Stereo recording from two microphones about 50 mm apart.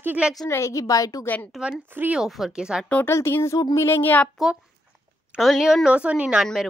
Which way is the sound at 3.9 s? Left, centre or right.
Left.